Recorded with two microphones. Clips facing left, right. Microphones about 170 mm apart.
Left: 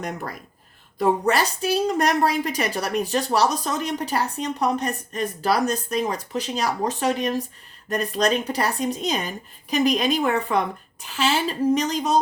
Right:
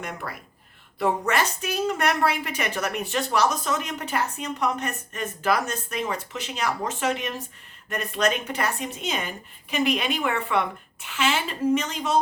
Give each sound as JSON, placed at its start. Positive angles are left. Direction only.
{"t": 0.9, "sound": "a woman's voice", "side_deg": 35}